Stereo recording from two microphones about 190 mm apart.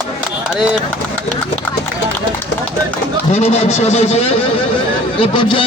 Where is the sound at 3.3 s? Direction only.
35° left (ahead or behind).